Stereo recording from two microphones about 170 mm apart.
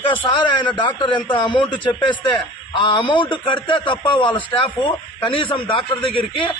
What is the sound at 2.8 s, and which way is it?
A man's voice, 30° left (ahead or behind).